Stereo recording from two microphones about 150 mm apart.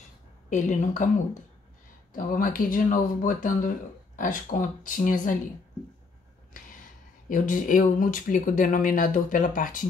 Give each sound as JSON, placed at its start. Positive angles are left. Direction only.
{"t": 0.5, "sound": "speech", "side_deg": 55}
{"t": 2.1, "sound": "speech", "side_deg": 65}
{"t": 7.2, "sound": "speech", "side_deg": 60}